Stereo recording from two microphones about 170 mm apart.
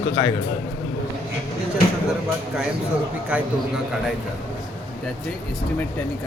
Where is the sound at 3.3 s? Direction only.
10° right (ahead or behind).